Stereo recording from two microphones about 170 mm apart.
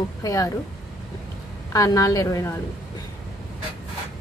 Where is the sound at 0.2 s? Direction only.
20° left (ahead or behind).